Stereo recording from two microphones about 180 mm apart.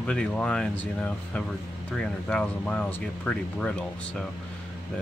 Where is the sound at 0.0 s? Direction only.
5° left (ahead or behind).